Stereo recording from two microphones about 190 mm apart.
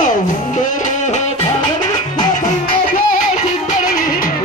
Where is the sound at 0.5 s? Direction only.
40° left (ahead or behind).